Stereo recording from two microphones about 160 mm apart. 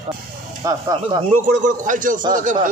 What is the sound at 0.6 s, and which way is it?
Speech, 20° right (ahead or behind).